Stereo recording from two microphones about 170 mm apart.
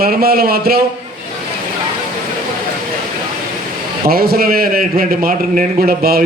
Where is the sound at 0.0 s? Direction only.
65° right (ahead or behind).